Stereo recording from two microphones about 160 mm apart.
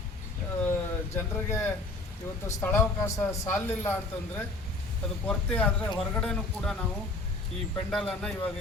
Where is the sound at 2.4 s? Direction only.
15° left (ahead or behind).